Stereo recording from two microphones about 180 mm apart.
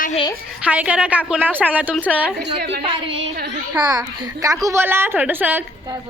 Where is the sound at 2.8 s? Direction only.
30° right (ahead or behind); by 5.6 s 10° right (ahead or behind).